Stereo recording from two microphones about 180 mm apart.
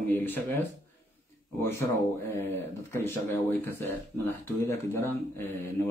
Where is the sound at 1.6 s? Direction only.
15° left (ahead or behind).